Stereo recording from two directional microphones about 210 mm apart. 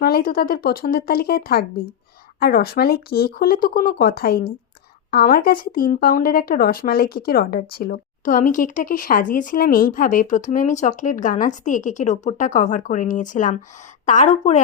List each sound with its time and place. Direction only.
0.0 s speech: 45° left (ahead or behind)